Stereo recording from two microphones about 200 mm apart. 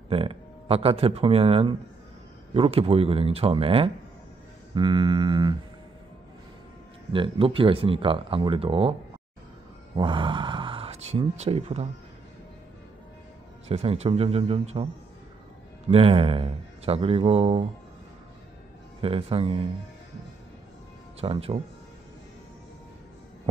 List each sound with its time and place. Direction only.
0.1 s speech: 30° right (ahead or behind)
7.1 s speech: 25° right (ahead or behind)
9.9 s speech: 25° right (ahead or behind)
13.7 s speech: 30° right (ahead or behind)
15.9 s speech: 30° right (ahead or behind)
18.9 s speech: 30° right (ahead or behind)
21.2 s speech: 30° right (ahead or behind)